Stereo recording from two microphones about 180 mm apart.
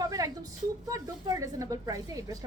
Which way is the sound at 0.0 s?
20° right (ahead or behind).